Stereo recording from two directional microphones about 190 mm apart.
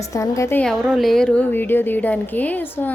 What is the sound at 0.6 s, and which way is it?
Speech, centre (ahead or behind).